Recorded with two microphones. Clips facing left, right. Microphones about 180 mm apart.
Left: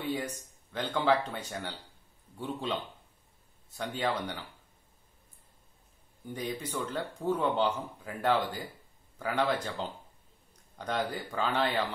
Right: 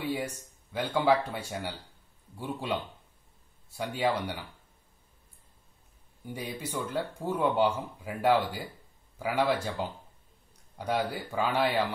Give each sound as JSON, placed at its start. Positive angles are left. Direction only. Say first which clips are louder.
{"t": 0.0, "sound": "a sound", "louder": "right 1 dB", "side_deg": -10}
{"t": 0.7, "sound": "speech", "louder": "right 2 dB", "side_deg": -10}
{"t": 6.2, "sound": "speech", "louder": "left 1 dB", "side_deg": -10}